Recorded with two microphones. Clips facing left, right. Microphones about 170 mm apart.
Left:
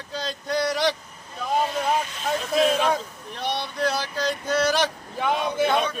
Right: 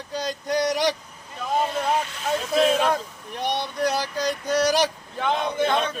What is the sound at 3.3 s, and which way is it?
Speech, 15° right (ahead or behind).